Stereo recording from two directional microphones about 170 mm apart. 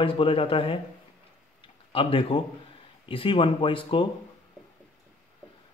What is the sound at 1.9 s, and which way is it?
Speech, 35° left (ahead or behind).